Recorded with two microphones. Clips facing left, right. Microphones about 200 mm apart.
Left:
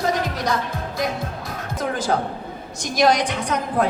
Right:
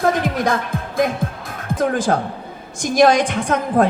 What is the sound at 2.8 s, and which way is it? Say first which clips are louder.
Speech: right 5 dB; 50° right (ahead or behind).